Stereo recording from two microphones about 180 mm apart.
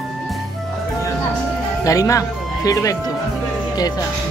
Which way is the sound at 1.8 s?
20° left (ahead or behind).